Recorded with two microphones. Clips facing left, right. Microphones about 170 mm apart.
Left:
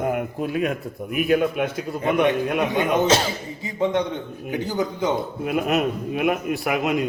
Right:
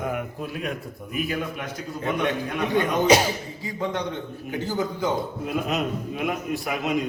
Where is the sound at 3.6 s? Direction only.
25° left (ahead or behind).